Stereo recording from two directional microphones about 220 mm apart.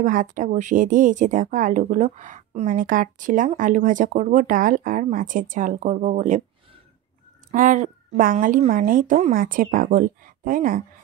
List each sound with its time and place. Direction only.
0.0 s speech: 35° right (ahead or behind)
7.5 s speech: 35° right (ahead or behind)